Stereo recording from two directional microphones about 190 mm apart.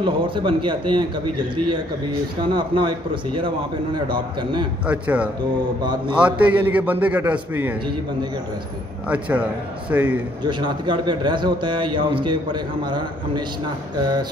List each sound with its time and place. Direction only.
0.0 s a man's voice: 25° right (ahead or behind)
2.5 s a man's voice: 25° right (ahead or behind)
4.8 s a man's voice: 5° right (ahead or behind)
5.8 s a man's voice: 25° right (ahead or behind)
6.1 s a man's voice: 5° right (ahead or behind)
9.1 s a man's voice: 5° right (ahead or behind)
10.4 s a man's voice: 25° right (ahead or behind)